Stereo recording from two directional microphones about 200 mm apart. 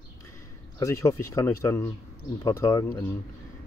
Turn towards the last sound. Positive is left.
turn(degrees=15)  # may be behind; listen again after turning